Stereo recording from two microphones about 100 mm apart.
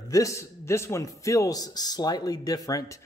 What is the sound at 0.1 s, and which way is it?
A man's voice, 30° left (ahead or behind).